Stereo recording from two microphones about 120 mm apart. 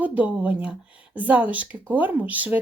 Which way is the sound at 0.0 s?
10° right (ahead or behind).